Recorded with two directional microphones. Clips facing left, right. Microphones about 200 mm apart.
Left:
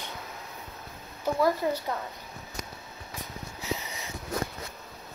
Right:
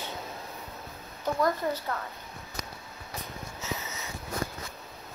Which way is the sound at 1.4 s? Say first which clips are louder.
Left 3 dB; 10° left (ahead or behind).